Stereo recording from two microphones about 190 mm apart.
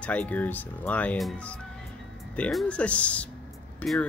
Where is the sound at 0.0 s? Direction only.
5° left (ahead or behind).